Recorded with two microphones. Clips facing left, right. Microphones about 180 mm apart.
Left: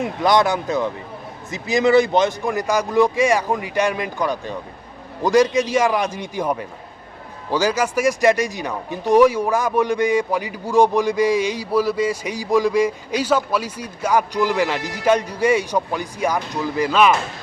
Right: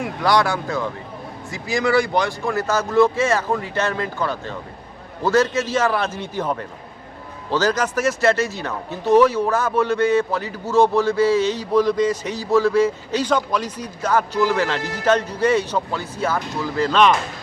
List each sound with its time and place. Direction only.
0.0 s speech: 20° left (ahead or behind)